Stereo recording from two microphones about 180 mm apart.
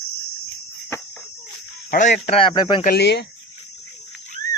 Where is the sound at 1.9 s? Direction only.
50° left (ahead or behind); by 2.8 s 25° left (ahead or behind).